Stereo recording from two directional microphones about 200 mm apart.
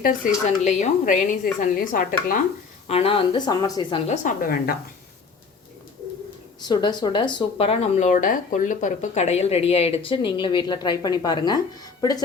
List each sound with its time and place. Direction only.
0.2 s speech: 40° left (ahead or behind)
2.8 s speech: 30° left (ahead or behind); by 4.8 s 50° left (ahead or behind)
6.7 s speech: 20° left (ahead or behind)